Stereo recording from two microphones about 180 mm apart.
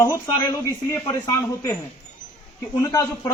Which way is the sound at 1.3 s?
15° left (ahead or behind).